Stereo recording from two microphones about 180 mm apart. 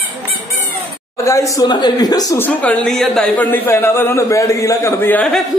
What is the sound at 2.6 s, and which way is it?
A man's voice, 5° left (ahead or behind).